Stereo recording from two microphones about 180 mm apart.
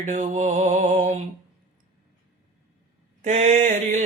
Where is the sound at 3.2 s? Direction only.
40° right (ahead or behind).